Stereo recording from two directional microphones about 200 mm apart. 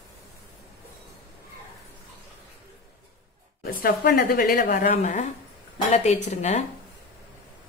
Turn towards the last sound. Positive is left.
turn(degrees=35)  # may be behind; listen again after turning